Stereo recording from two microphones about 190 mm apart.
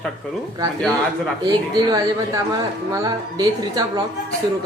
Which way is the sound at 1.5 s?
20° right (ahead or behind).